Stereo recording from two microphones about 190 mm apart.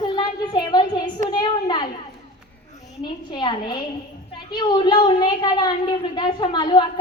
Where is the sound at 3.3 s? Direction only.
25° left (ahead or behind).